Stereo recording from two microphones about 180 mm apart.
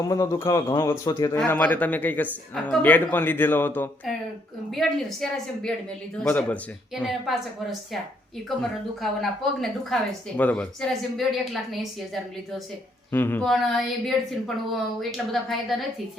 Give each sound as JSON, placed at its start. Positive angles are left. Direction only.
{"t": 0.0, "sound": "speech", "side_deg": 20}
{"t": 1.4, "sound": "speech", "side_deg": 10}
{"t": 9.0, "sound": "speech", "side_deg": 0}
{"t": 13.1, "sound": "speech", "side_deg": 10}